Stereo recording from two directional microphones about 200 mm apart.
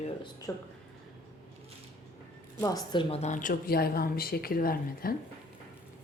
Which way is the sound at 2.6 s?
20° left (ahead or behind).